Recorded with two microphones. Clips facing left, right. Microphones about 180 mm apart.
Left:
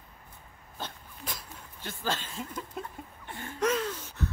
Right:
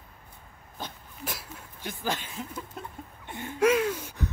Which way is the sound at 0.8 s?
10° right (ahead or behind).